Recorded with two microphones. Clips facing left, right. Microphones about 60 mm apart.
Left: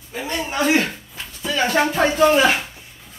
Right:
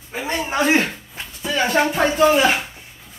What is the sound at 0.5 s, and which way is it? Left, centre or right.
Speech, right.